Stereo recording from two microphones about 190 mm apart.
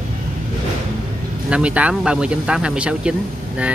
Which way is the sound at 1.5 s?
5° right (ahead or behind).